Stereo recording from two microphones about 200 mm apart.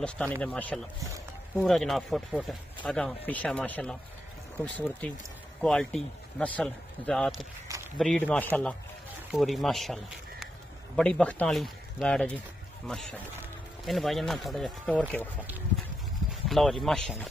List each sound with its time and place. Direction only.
0.0 s speech: 5° left (ahead or behind)
7.6 s walk: 15° right (ahead or behind)
8.0 s speech: 5° left (ahead or behind)
11.0 s speech: 5° left (ahead or behind)
16.4 s a sound: centre (ahead or behind)
16.8 s speech: centre (ahead or behind)